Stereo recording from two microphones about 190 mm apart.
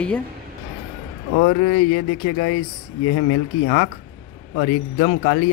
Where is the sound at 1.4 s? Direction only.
45° left (ahead or behind).